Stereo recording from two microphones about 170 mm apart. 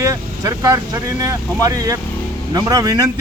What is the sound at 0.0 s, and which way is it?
A man's voice, 20° right (ahead or behind).